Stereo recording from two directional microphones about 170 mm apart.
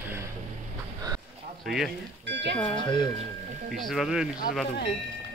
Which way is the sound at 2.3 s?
90° right.